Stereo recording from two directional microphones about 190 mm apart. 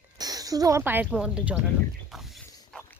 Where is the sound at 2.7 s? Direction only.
Centre (ahead or behind).